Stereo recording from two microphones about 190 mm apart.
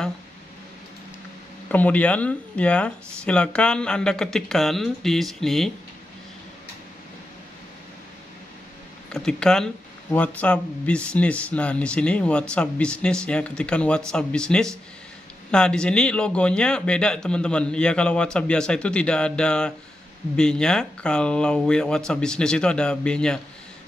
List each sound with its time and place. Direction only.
1.7 s speech: 10° left (ahead or behind)
9.1 s speech: 5° left (ahead or behind)